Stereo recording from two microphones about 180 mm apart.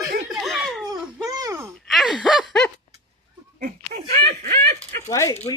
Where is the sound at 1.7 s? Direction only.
Centre (ahead or behind).